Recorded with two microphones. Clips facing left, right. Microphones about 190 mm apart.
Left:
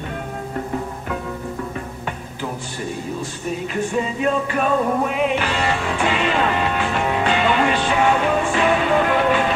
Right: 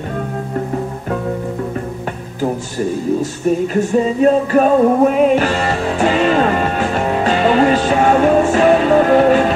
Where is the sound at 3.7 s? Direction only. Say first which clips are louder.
Right 7 dB; 40° right (ahead or behind).